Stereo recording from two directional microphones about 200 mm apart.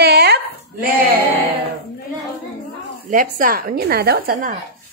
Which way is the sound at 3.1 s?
45° right (ahead or behind).